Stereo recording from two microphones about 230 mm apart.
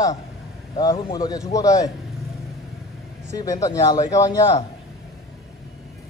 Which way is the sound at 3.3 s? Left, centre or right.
Centre.